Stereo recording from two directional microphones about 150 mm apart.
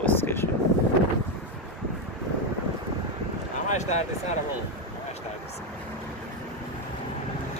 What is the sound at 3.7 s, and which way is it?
Speech, 50° left (ahead or behind).